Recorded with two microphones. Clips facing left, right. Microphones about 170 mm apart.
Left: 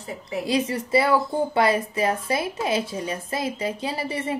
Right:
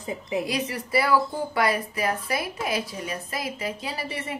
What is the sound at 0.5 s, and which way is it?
Speech, 25° left (ahead or behind).